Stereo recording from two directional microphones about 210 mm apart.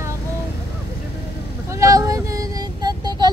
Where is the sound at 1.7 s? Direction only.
15° right (ahead or behind).